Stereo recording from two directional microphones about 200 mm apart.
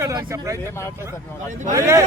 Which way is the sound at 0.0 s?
15° right (ahead or behind).